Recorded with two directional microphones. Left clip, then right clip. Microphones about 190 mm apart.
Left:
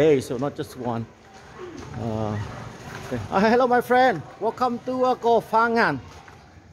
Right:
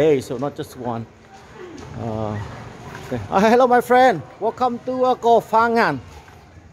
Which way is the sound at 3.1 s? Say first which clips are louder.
Right 4 dB; 15° right (ahead or behind).